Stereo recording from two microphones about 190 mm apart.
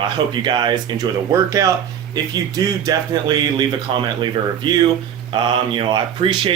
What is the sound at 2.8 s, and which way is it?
Speech, 20° right (ahead or behind).